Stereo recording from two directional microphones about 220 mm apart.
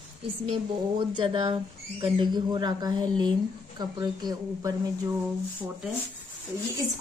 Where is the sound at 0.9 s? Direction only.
25° right (ahead or behind).